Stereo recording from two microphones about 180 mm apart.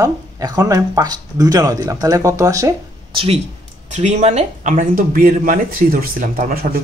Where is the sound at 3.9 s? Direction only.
40° right (ahead or behind).